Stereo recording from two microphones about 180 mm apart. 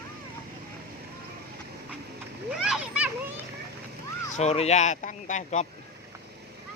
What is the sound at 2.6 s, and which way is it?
Children playing, 5° right (ahead or behind).